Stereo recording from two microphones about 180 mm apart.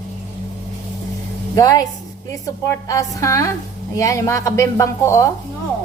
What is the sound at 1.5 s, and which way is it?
A woman's voice, 20° left (ahead or behind).